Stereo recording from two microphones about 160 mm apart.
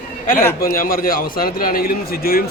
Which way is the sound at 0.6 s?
60° left (ahead or behind).